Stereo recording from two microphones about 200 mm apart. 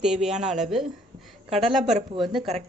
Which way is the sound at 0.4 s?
35° right (ahead or behind).